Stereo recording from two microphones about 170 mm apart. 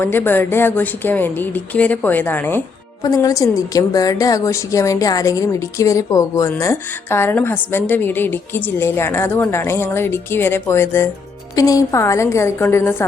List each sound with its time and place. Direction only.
0.0 s a woman's voice: 10° left (ahead or behind)